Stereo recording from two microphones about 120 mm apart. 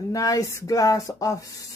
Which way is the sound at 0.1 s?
25° left (ahead or behind).